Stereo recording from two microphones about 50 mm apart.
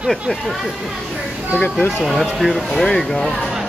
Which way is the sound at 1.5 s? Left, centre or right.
Left.